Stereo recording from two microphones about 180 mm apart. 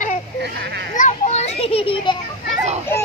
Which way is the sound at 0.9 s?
40° left (ahead or behind).